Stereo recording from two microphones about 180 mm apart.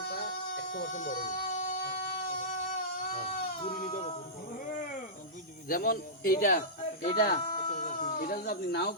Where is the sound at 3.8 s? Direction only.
45° left (ahead or behind).